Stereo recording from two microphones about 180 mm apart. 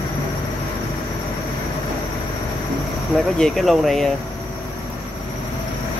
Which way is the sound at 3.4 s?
Centre (ahead or behind).